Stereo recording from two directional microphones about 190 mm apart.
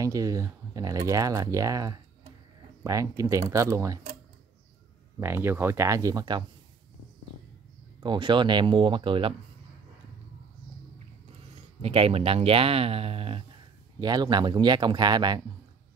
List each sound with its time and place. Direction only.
0.0 s speech: 20° right (ahead or behind)
5.2 s speech: 10° right (ahead or behind)
8.0 s a man's voice: 25° right (ahead or behind)
11.8 s a man's voice: 30° right (ahead or behind)